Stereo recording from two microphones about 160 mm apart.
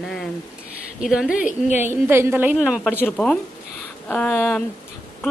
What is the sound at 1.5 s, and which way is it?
Speech, 45° left (ahead or behind).